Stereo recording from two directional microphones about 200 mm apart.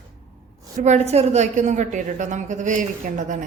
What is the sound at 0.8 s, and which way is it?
A woman's voice, 35° right (ahead or behind).